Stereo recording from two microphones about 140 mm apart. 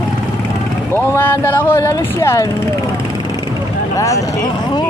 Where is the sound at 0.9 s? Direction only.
15° left (ahead or behind).